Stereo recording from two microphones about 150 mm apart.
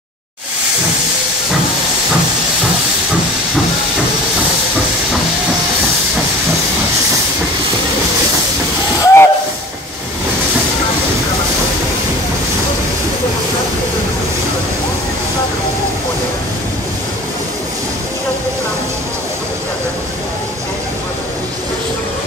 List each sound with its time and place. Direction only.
9.0 s hiss: 15° left (ahead or behind)